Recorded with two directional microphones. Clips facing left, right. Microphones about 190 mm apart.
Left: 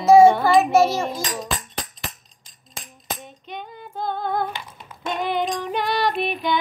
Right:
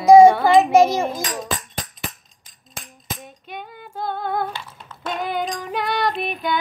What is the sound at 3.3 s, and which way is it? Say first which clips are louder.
Female singing: even; 5° right (ahead or behind).